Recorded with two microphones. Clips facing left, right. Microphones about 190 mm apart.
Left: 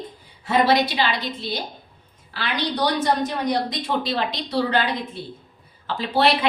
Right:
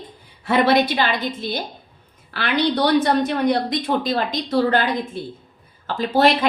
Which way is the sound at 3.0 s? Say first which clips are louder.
Right 4 dB; 60° right (ahead or behind).